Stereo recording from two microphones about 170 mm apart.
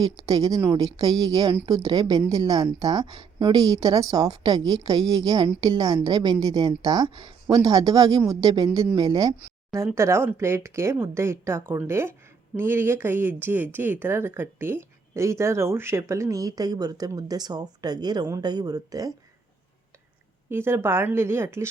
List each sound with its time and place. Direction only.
0.0 s a woman's voice: 20° right (ahead or behind)
20.5 s speech: 15° right (ahead or behind)